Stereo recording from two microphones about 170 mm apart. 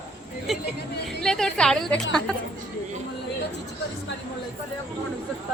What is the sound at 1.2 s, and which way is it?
Speech, 5° left (ahead or behind).